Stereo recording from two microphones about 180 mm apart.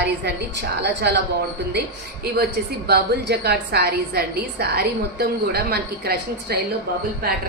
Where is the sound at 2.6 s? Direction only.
60° right (ahead or behind).